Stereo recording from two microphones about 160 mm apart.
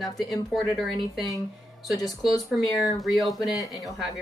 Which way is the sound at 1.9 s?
25° left (ahead or behind).